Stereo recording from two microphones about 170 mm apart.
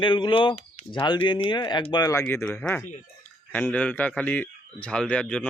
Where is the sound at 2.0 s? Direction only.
15° left (ahead or behind).